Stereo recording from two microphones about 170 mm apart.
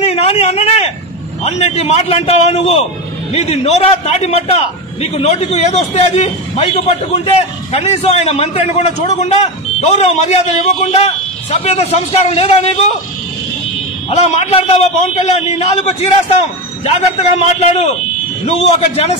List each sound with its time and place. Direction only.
0.0 s a sound: 40° left (ahead or behind)
1.4 s a man's voice: 40° left (ahead or behind)
14.1 s a man's voice: 40° left (ahead or behind)